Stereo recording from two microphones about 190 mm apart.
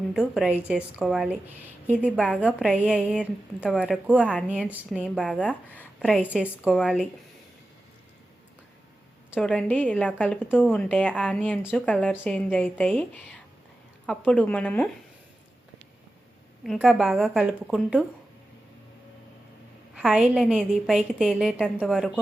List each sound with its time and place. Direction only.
0.1 s a woman's voice: centre (ahead or behind)
6.0 s a woman's voice: 5° right (ahead or behind)
6.7 s a woman's voice: 5° left (ahead or behind)
9.3 s a woman's voice: 5° left (ahead or behind)
16.7 s a woman's voice: centre (ahead or behind)
20.0 s a woman's voice: 5° right (ahead or behind)